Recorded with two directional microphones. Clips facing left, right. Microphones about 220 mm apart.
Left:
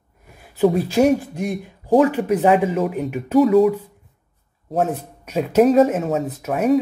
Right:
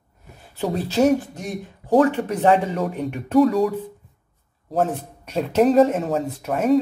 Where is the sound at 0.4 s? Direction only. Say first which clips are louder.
Left 9 dB; 10° left (ahead or behind).